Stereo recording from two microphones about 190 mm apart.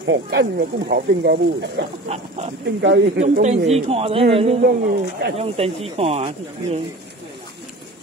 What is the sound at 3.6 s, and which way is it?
Speech, 30° right (ahead or behind).